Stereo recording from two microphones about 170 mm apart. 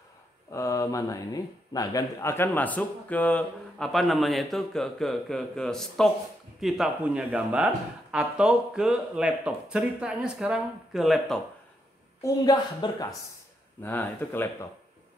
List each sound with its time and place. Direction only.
0.5 s speech: 20° left (ahead or behind); by 11.4 s centre (ahead or behind)
12.2 s a woman's voice: 20° left (ahead or behind)